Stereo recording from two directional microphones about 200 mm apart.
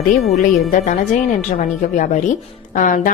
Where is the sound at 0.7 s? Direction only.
40° left (ahead or behind).